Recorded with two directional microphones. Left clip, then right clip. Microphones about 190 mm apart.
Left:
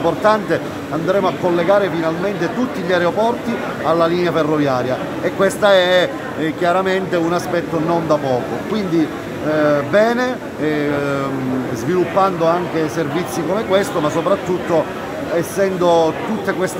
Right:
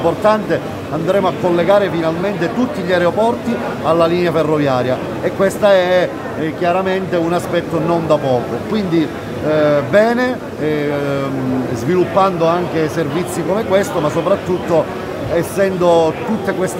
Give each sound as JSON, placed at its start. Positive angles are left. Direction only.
{"t": 0.2, "sound": "speech", "side_deg": -5}
{"t": 15.3, "sound": "speech", "side_deg": -15}